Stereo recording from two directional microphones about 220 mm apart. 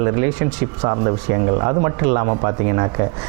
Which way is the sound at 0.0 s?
20° right (ahead or behind).